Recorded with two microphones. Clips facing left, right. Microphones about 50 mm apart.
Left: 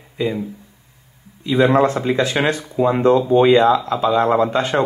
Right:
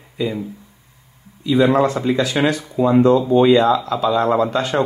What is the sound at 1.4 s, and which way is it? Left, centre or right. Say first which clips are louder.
Speech: even; left.